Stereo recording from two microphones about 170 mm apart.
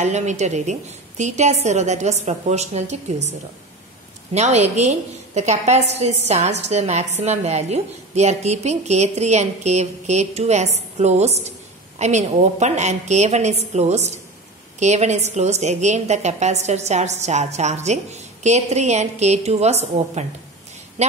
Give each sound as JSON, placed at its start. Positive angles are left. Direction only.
{"t": 0.0, "sound": "a woman's voice", "side_deg": -45}
{"t": 4.3, "sound": "a woman's voice", "side_deg": -40}